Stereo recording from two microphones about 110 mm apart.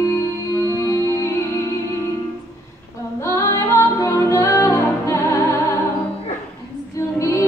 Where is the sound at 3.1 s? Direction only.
25° left (ahead or behind).